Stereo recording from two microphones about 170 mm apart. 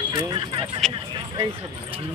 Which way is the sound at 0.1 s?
25° right (ahead or behind).